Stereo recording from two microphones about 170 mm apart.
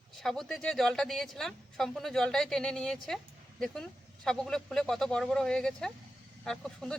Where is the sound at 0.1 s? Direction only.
Centre (ahead or behind).